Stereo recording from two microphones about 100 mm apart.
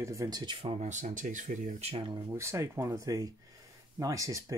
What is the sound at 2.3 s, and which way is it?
Speech, 30° right (ahead or behind).